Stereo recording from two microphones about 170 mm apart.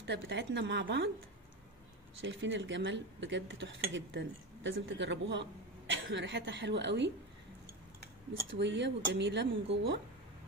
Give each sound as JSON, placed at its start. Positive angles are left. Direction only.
{"t": 0.0, "sound": "speech", "side_deg": -90}
{"t": 2.2, "sound": "speech", "side_deg": -90}
{"t": 8.5, "sound": "speech", "side_deg": -90}